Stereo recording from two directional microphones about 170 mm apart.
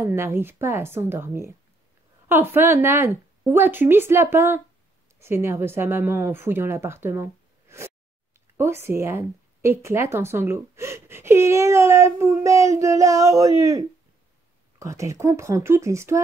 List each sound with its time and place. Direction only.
0.0 s speech: 15° right (ahead or behind)